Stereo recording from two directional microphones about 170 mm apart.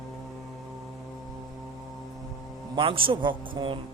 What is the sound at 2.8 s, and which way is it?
A man's voice, 30° right (ahead or behind).